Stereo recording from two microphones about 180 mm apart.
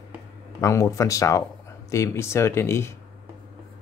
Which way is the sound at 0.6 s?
15° left (ahead or behind).